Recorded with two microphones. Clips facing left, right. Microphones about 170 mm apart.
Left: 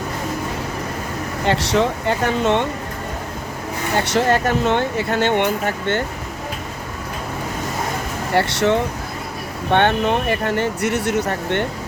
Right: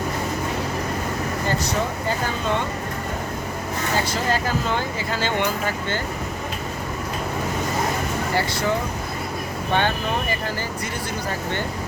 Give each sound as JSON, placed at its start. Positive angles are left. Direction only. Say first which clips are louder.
{"t": 1.5, "sound": "speech", "louder": "left 9 dB", "side_deg": 75}
{"t": 3.9, "sound": "speech", "louder": "left 7 dB", "side_deg": 65}
{"t": 8.4, "sound": "speech", "louder": "left 8 dB", "side_deg": 70}